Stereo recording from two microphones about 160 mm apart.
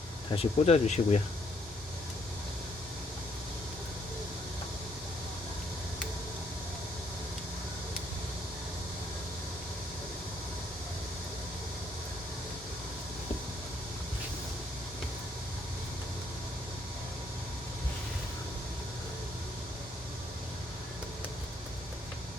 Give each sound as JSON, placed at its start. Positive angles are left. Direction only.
{"t": 0.3, "sound": "speech", "side_deg": 45}